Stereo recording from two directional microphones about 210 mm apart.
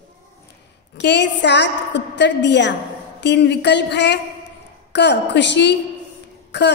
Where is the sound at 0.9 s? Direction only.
55° left (ahead or behind).